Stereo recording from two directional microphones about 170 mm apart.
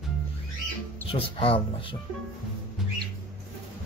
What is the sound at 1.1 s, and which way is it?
Speech, 35° left (ahead or behind).